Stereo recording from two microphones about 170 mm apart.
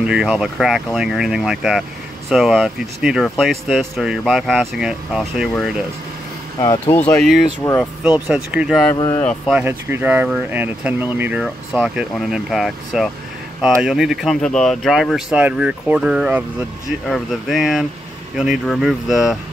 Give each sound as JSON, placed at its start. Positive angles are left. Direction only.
{"t": 0.0, "sound": "speech", "side_deg": -5}
{"t": 6.6, "sound": "speech", "side_deg": 20}
{"t": 7.0, "sound": "speech", "side_deg": 10}
{"t": 7.6, "sound": "speech", "side_deg": 25}
{"t": 8.5, "sound": "speech", "side_deg": 0}
{"t": 8.9, "sound": "speech", "side_deg": 20}
{"t": 9.5, "sound": "speech", "side_deg": -10}